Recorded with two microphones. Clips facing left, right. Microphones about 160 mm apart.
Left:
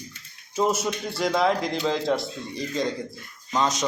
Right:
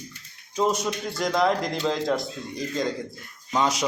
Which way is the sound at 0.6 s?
5° left (ahead or behind).